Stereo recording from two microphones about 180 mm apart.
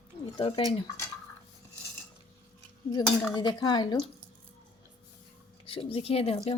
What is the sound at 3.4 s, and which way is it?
Speech, 25° left (ahead or behind).